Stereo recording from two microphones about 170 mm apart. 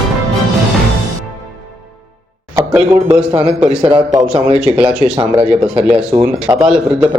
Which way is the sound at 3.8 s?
30° right (ahead or behind).